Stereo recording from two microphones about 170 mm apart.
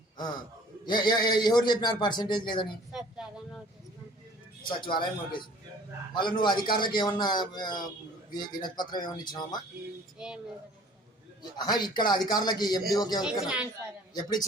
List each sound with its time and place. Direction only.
0.9 s a man's voice: 25° left (ahead or behind)
2.9 s a sound: 5° right (ahead or behind)
4.8 s a man's voice: 30° left (ahead or behind)
6.4 s a man's voice: 25° left (ahead or behind)
10.2 s speech: 5° right (ahead or behind)
11.5 s a man's voice: 25° left (ahead or behind)
13.2 s speech: 5° right (ahead or behind)
14.1 s a man's voice: 25° left (ahead or behind)